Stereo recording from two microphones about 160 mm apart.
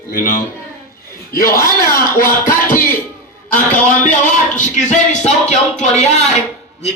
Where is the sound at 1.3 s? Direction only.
65° left (ahead or behind).